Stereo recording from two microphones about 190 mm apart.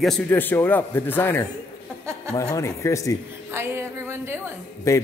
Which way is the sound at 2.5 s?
15° left (ahead or behind).